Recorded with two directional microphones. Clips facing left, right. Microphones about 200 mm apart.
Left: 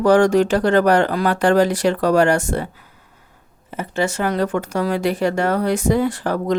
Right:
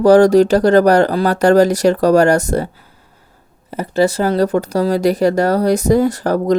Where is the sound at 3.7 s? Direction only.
35° right (ahead or behind).